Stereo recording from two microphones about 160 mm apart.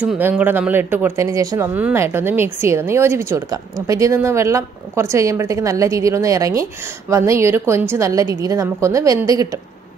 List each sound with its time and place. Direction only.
0.0 s speech: 10° right (ahead or behind)